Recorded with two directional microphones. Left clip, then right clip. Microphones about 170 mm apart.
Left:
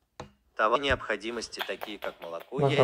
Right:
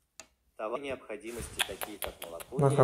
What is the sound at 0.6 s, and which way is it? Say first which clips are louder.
Speech: left 11 dB; 30° left (ahead or behind).